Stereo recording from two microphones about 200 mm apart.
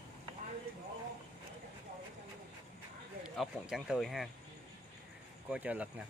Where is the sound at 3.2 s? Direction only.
Centre (ahead or behind).